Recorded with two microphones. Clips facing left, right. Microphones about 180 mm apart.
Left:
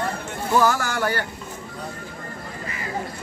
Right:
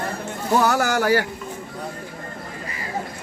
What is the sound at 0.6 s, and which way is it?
Speech, 70° right (ahead or behind).